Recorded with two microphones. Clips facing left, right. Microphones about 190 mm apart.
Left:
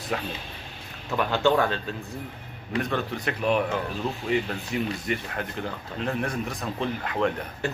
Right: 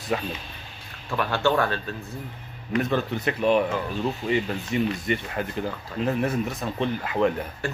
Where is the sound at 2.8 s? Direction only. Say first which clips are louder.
Right 3 dB; centre (ahead or behind).